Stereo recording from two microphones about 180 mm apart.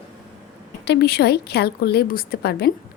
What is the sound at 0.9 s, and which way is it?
A woman's voice, 65° left (ahead or behind).